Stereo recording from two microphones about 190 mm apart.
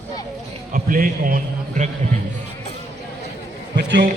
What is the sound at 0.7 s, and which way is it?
A man's voice, 45° right (ahead or behind).